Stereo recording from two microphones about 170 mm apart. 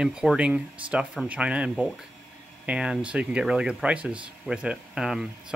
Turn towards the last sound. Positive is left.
turn(degrees=-5)  # may be behind; listen again after turning